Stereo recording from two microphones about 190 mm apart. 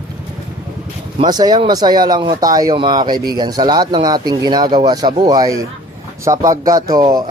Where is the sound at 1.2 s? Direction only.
20° right (ahead or behind).